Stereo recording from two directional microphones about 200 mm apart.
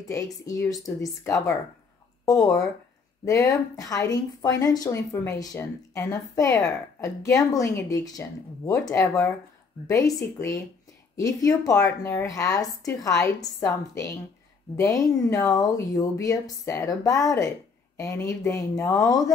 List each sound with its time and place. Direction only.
0.0 s a woman's voice: 15° left (ahead or behind)